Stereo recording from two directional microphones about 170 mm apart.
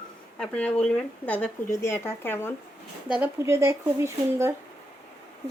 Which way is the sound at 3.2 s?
15° right (ahead or behind).